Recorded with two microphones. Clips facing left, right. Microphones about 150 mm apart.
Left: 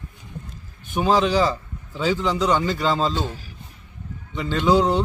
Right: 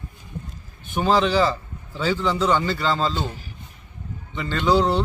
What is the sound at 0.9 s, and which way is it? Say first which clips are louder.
A man's voice: even; 5° left (ahead or behind).